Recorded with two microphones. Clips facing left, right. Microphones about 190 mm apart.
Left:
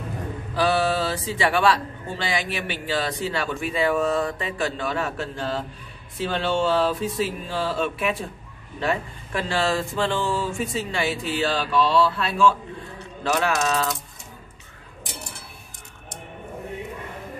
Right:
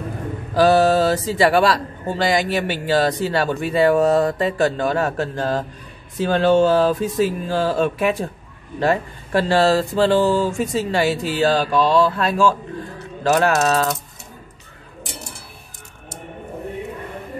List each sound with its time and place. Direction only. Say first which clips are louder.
0.6 s a man's voice: right 8 dB; 40° right (ahead or behind)